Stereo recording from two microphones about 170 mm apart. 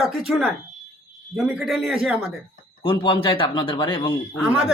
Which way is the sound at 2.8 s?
30° left (ahead or behind).